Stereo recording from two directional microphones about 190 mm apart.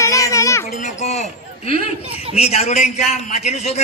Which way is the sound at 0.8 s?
35° left (ahead or behind).